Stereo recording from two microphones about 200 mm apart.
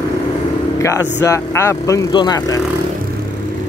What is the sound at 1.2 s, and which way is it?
Speech, 15° left (ahead or behind).